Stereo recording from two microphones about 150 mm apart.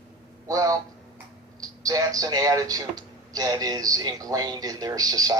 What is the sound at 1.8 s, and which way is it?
Speech, 25° right (ahead or behind).